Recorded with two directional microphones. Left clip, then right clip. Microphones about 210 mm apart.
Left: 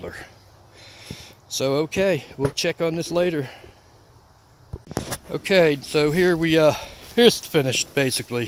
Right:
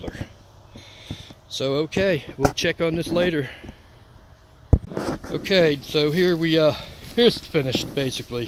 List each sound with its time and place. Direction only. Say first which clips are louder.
1.0 s speech: right 1 dB; 25° left (ahead or behind); by 3.6 s 10° left (ahead or behind)
5.3 s speech: left 2 dB; 20° left (ahead or behind); by 8.4 s 40° left (ahead or behind)